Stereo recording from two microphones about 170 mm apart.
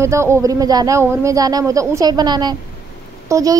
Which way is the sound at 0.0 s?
15° right (ahead or behind).